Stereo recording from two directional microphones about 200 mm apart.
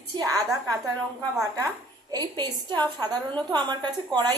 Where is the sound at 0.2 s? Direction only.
15° right (ahead or behind).